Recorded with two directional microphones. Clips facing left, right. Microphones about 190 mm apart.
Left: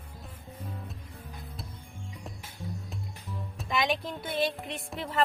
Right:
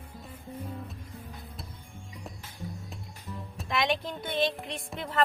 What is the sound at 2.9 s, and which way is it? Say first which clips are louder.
Speech: left 1 dB; centre (ahead or behind).